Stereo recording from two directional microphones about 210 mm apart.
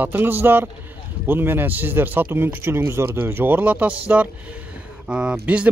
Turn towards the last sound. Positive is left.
turn(degrees=-5)  # may be behind; listen again after turning